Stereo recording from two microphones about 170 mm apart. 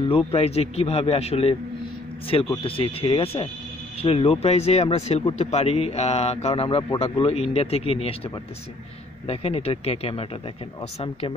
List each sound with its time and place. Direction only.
0.1 s speech: 35° left (ahead or behind)
2.6 s speech: 35° left (ahead or behind)
9.3 s speech: 35° left (ahead or behind)